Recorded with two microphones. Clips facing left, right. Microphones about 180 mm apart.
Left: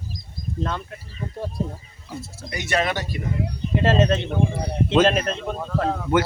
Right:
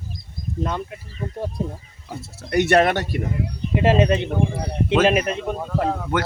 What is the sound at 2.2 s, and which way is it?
Speech, 65° right (ahead or behind).